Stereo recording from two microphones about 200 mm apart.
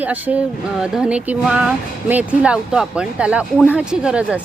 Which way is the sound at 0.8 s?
5° right (ahead or behind).